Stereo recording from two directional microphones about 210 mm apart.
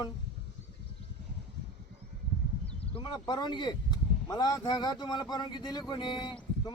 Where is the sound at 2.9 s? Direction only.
20° left (ahead or behind).